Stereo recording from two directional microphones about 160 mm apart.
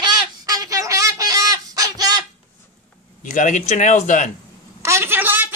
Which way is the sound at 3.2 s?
55° left (ahead or behind).